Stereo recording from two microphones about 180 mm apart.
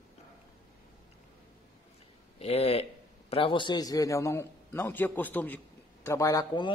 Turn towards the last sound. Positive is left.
turn(degrees=20)  # may be behind; listen again after turning